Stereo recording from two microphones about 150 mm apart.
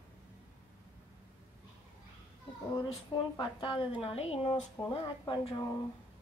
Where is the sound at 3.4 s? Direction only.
35° left (ahead or behind).